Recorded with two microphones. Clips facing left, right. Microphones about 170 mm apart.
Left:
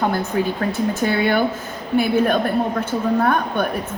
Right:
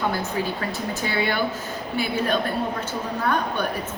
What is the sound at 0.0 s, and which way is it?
A woman's voice, 55° left (ahead or behind).